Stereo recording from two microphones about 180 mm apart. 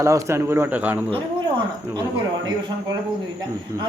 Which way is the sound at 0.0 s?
15° right (ahead or behind).